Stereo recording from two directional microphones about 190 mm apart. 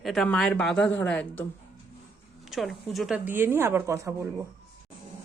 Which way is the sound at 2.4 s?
Centre (ahead or behind).